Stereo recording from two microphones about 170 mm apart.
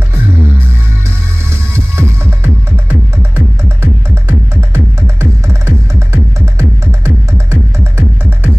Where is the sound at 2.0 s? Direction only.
10° right (ahead or behind).